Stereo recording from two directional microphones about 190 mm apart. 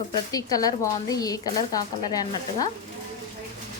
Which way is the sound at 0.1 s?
20° left (ahead or behind).